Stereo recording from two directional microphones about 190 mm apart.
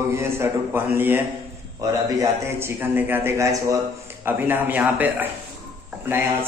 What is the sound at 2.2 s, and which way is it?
A man's voice, 15° right (ahead or behind).